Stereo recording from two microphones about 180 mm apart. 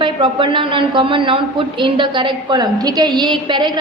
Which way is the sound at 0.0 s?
25° right (ahead or behind).